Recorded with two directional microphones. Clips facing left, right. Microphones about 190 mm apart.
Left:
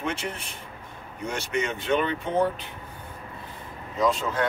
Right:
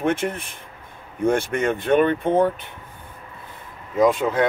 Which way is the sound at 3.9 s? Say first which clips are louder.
Right 7 dB; 55° right (ahead or behind).